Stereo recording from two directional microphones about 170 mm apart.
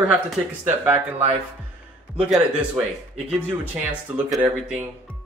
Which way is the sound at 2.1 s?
5° right (ahead or behind).